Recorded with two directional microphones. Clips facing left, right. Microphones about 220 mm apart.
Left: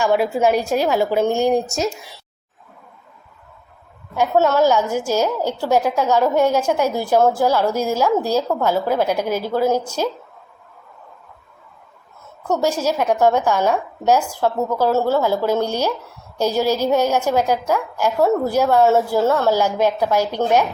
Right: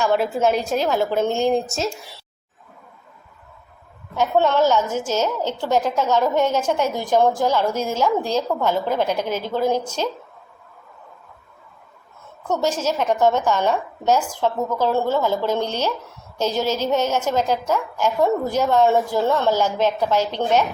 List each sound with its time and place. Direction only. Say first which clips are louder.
0.0 s a woman's voice: left 2 dB; 10° left (ahead or behind)
4.1 s a woman's voice: left 2 dB; 10° left (ahead or behind)
12.5 s a woman's voice: left 2 dB; 10° left (ahead or behind)